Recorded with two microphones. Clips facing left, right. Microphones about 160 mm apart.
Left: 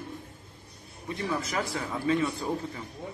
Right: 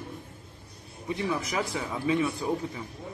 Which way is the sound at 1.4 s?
15° right (ahead or behind).